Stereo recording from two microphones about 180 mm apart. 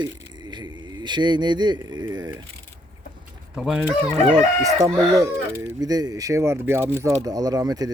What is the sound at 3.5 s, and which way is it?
Speech, 5° right (ahead or behind).